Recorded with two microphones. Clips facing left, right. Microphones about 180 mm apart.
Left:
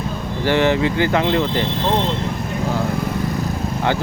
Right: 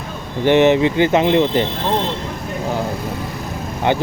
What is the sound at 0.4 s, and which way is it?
Speech, 20° right (ahead or behind).